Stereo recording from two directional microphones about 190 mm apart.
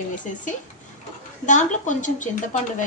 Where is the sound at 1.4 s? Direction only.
40° left (ahead or behind).